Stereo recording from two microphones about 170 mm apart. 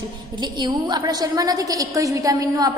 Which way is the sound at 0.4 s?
25° right (ahead or behind).